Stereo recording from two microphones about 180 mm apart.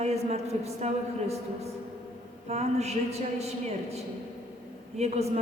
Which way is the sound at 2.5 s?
35° right (ahead or behind).